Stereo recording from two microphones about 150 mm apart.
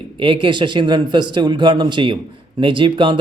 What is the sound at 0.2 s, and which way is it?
Speech, 35° right (ahead or behind).